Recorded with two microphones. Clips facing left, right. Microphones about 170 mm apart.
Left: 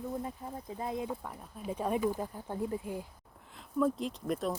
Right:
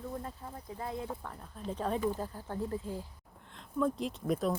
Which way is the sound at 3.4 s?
5° left (ahead or behind).